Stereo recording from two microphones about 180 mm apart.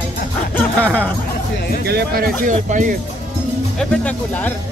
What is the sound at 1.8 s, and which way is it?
Speech, 65° right (ahead or behind).